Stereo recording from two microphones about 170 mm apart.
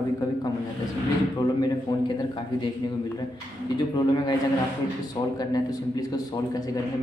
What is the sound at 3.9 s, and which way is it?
Speech, 25° left (ahead or behind).